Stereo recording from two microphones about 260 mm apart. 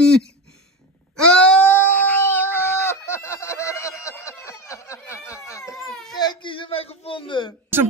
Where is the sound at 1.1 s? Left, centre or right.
Centre.